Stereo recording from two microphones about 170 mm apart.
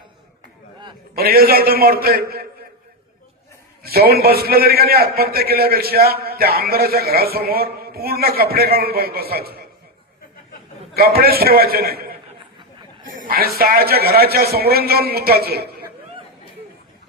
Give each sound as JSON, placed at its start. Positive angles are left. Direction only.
{"t": 1.1, "sound": "a man's voice", "side_deg": -65}
{"t": 3.8, "sound": "a man's voice", "side_deg": -65}
{"t": 10.9, "sound": "a man's voice", "side_deg": -65}
{"t": 13.1, "sound": "a man's voice", "side_deg": -60}